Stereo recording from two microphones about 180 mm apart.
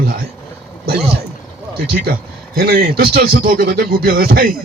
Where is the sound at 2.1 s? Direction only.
55° right (ahead or behind).